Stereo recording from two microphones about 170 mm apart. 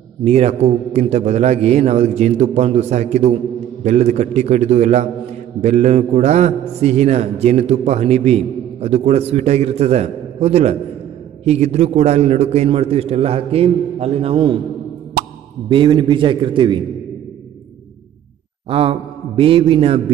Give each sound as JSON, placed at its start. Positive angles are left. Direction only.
{"t": 0.2, "sound": "a man's voice", "side_deg": -40}
{"t": 15.7, "sound": "a man's voice", "side_deg": -30}
{"t": 18.7, "sound": "a man's voice", "side_deg": -35}